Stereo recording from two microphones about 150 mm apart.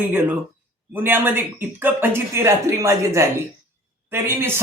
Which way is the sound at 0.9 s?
15° right (ahead or behind).